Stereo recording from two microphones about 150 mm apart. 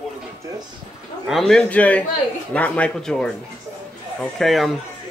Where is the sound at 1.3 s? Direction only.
5° left (ahead or behind).